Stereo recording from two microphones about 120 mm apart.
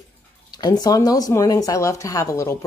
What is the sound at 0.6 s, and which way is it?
A woman's voice, 35° left (ahead or behind).